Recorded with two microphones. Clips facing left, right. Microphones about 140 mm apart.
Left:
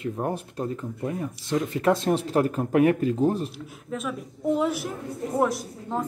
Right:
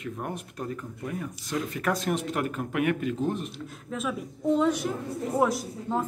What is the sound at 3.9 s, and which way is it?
A woman's voice, centre (ahead or behind).